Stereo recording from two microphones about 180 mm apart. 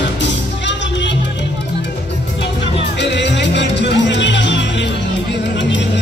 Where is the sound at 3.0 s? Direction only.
75° left (ahead or behind).